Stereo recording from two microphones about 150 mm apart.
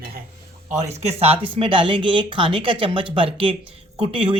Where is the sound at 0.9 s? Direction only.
45° right (ahead or behind).